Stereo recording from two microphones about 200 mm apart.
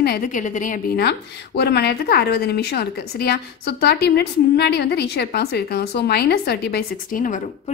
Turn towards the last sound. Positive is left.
turn(degrees=40)  # may be behind; listen again after turning